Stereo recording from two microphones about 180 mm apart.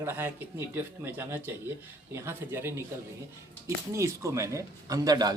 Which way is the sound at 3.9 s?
15° right (ahead or behind).